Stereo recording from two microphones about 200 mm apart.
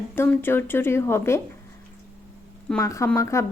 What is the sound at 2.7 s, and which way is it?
Speech, 15° left (ahead or behind).